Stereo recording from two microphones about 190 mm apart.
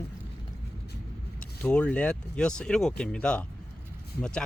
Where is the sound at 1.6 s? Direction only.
5° left (ahead or behind).